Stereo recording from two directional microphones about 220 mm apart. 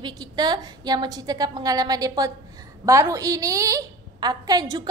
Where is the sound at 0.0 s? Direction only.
20° right (ahead or behind).